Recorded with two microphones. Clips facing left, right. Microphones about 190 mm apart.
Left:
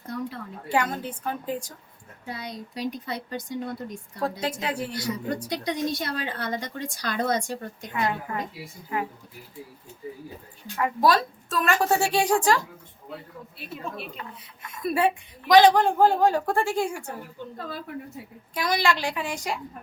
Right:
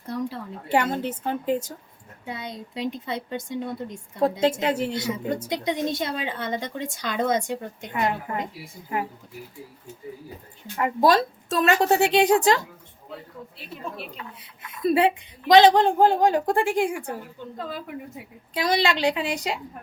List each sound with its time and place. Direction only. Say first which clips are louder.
0.1 s a sound: right 3 dB; 30° right (ahead or behind)
1.2 s a woman's voice: right 5 dB; 25° right (ahead or behind)
10.8 s a woman's voice: right 2 dB; 25° right (ahead or behind)
14.8 s a woman's voice: right 4 dB; 20° right (ahead or behind)
18.5 s a woman's voice: right 2 dB; 25° right (ahead or behind)